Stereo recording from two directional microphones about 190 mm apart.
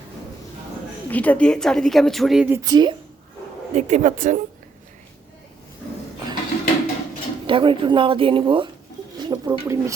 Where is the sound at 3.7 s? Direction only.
40° right (ahead or behind).